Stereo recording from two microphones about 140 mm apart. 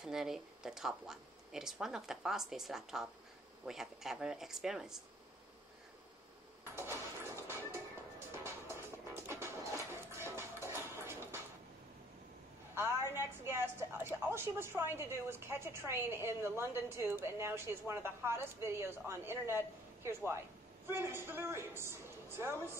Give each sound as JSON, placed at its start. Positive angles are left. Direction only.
{"t": 0.0, "sound": "speech", "side_deg": -5}
{"t": 6.9, "sound": "music", "side_deg": -20}
{"t": 13.1, "sound": "a woman's voice", "side_deg": -15}